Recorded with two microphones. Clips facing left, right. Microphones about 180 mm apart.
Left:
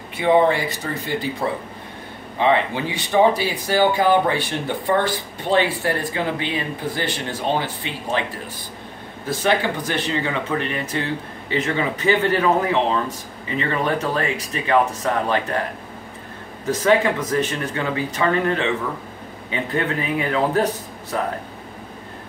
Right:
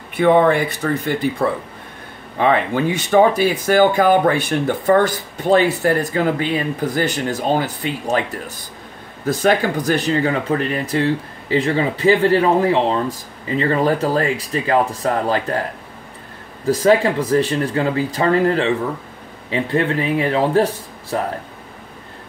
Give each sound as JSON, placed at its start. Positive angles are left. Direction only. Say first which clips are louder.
{"t": 0.2, "sound": "speech", "louder": "right 3 dB", "side_deg": -55}
{"t": 9.3, "sound": "speech", "louder": "right 4 dB", "side_deg": -40}
{"t": 16.6, "sound": "speech", "louder": "right 3 dB", "side_deg": -35}